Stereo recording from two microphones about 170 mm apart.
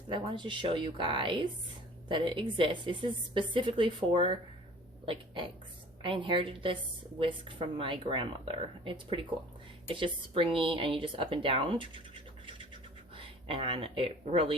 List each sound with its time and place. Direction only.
0.1 s a woman's voice: 30° right (ahead or behind)
13.1 s speech: 30° right (ahead or behind)